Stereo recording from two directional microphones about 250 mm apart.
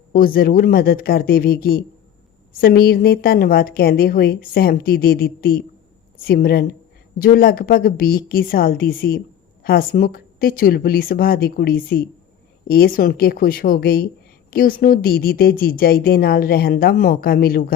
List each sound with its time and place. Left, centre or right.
0.1 s speech: left